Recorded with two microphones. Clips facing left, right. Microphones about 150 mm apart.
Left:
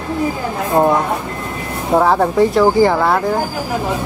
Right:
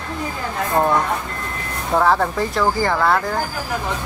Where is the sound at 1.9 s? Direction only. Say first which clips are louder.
Left 4 dB; 20° left (ahead or behind).